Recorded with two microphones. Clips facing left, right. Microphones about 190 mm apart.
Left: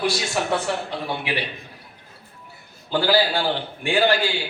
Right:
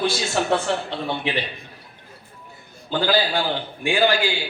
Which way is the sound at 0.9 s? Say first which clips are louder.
Right 2 dB; 25° right (ahead or behind).